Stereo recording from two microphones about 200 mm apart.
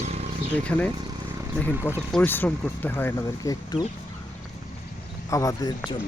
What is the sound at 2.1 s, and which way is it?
Speech, 5° left (ahead or behind).